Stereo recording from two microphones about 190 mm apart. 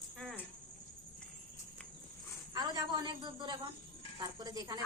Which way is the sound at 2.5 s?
20° right (ahead or behind).